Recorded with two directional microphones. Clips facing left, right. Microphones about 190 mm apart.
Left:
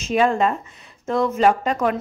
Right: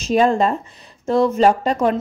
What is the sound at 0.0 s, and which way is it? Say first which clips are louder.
A woman's voice: right 3 dB; 35° right (ahead or behind).